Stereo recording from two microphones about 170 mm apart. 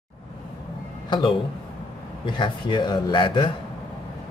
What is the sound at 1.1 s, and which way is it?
Speech, 30° left (ahead or behind).